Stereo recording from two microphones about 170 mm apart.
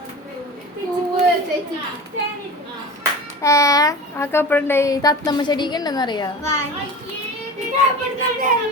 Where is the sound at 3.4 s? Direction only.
20° left (ahead or behind).